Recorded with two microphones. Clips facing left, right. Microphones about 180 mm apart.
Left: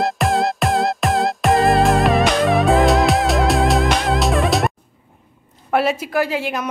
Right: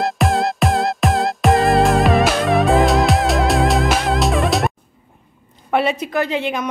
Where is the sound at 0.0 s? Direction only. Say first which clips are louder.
Even; centre (ahead or behind).